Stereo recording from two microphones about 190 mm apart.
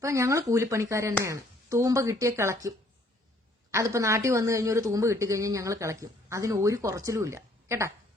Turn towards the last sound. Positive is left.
turn(degrees=-15)  # may be behind; listen again after turning